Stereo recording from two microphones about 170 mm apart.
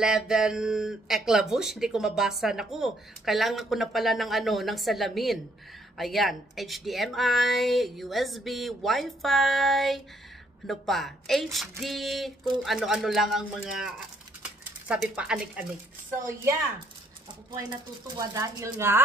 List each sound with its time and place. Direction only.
0.0 s speech: 5° right (ahead or behind)
17.6 s speech: 20° right (ahead or behind)